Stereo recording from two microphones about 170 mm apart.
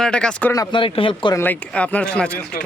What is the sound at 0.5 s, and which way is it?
Speech, 25° left (ahead or behind).